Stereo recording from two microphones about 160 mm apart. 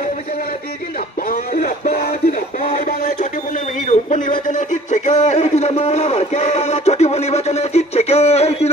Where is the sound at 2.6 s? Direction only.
60° left (ahead or behind).